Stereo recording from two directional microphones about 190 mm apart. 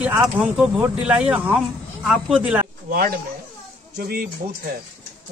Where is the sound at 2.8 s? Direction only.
50° right (ahead or behind).